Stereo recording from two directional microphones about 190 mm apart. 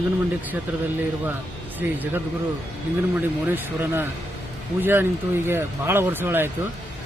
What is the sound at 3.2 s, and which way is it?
Speech, 10° right (ahead or behind).